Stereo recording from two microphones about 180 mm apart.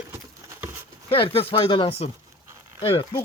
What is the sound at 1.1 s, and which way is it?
Speech, 30° left (ahead or behind).